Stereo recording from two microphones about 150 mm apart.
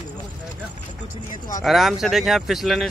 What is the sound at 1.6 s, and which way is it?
Speech, centre (ahead or behind).